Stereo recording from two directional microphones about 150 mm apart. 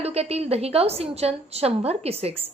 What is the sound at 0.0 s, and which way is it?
A woman's voice, 45° right (ahead or behind).